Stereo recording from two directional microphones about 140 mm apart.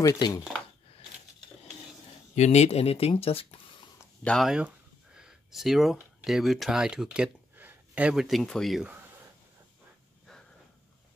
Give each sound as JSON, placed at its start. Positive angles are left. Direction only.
{"t": 0.0, "sound": "speech", "side_deg": 25}
{"t": 2.3, "sound": "speech", "side_deg": 55}
{"t": 4.2, "sound": "speech", "side_deg": 5}
{"t": 4.5, "sound": "speech", "side_deg": -5}
{"t": 10.3, "sound": "a sound", "side_deg": 5}